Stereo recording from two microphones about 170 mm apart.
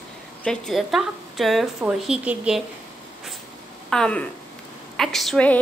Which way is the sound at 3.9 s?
5° left (ahead or behind).